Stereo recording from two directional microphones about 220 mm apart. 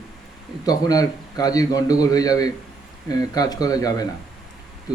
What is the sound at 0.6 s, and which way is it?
Speech, 15° left (ahead or behind).